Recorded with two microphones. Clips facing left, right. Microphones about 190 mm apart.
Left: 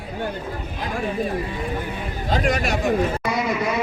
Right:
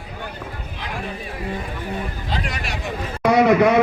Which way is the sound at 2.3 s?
45° left (ahead or behind).